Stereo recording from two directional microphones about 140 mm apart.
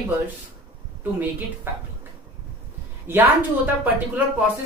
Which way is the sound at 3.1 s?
15° right (ahead or behind).